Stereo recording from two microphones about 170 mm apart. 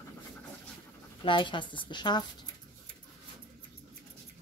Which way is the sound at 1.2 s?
30° left (ahead or behind).